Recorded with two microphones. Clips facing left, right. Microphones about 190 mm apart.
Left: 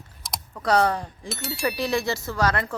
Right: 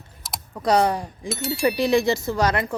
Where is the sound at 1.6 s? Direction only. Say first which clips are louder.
Right 6 dB; 15° right (ahead or behind).